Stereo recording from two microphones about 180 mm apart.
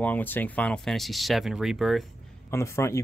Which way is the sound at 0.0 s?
10° left (ahead or behind).